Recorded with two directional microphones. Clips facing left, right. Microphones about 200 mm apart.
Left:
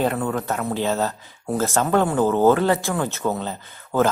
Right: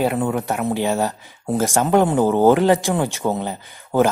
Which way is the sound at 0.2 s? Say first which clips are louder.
Right 3 dB; 10° right (ahead or behind).